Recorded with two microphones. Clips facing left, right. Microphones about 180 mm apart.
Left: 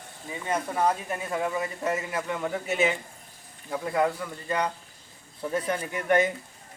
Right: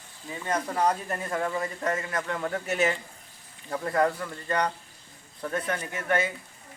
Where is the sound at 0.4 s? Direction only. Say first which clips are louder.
Even; 5° left (ahead or behind).